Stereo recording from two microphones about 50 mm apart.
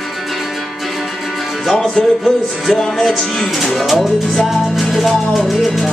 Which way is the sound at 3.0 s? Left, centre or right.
Centre.